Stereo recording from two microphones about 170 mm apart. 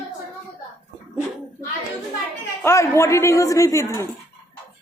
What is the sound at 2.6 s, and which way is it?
A woman's voice, 15° left (ahead or behind).